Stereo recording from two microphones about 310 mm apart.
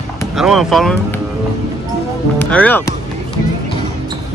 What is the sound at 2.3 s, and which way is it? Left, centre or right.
Speech, centre.